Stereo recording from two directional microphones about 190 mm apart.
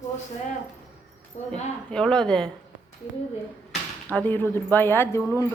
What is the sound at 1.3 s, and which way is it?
Speech, 35° left (ahead or behind).